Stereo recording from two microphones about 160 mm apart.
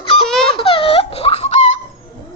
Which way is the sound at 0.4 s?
35° left (ahead or behind).